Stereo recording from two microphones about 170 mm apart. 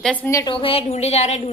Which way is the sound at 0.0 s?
10° left (ahead or behind).